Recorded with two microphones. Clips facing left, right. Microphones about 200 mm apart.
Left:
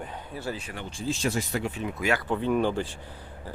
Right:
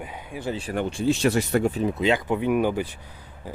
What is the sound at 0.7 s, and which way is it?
Speech, 60° right (ahead or behind).